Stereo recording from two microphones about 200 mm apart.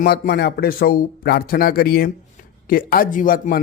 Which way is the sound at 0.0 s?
50° left (ahead or behind).